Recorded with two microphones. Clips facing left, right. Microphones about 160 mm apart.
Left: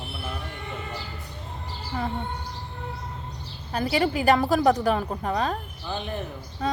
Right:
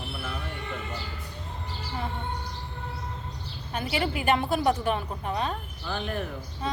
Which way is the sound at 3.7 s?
35° left (ahead or behind).